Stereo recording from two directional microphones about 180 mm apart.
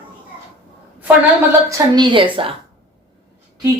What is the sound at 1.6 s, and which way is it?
Speech, 20° right (ahead or behind).